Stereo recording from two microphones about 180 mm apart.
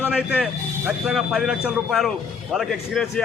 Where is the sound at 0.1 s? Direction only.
5° right (ahead or behind).